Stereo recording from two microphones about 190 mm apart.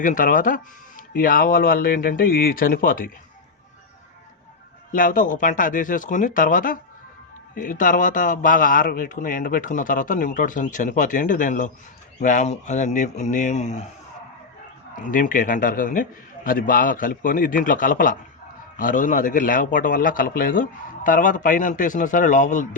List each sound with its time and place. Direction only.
0.0 s speech: 45° left (ahead or behind)
4.9 s speech: 45° left (ahead or behind)
14.9 s speech: 45° left (ahead or behind)